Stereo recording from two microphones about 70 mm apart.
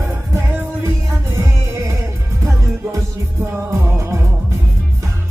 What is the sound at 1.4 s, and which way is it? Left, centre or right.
Music, right.